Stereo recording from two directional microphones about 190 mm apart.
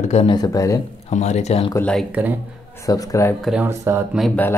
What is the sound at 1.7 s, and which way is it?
Speech, 5° left (ahead or behind).